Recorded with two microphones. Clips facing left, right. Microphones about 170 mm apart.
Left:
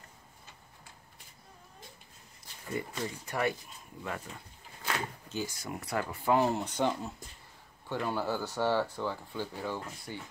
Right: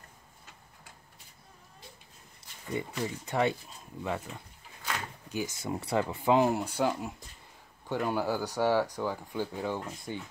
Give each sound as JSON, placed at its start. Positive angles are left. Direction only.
{"t": 2.7, "sound": "speech", "side_deg": -20}
{"t": 5.3, "sound": "speech", "side_deg": -20}